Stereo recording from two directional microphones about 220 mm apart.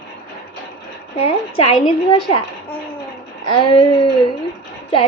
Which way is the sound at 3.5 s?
25° left (ahead or behind).